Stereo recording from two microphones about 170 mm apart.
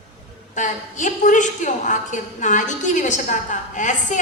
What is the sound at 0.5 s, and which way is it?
A woman's voice, 45° left (ahead or behind).